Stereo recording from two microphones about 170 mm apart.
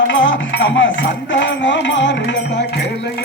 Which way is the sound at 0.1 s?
90° left.